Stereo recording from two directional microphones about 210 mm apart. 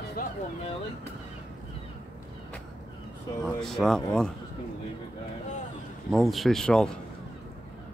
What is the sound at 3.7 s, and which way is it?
Speech, centre (ahead or behind).